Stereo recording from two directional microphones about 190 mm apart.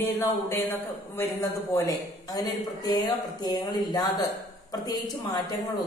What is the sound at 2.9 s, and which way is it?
A woman's voice, 20° left (ahead or behind).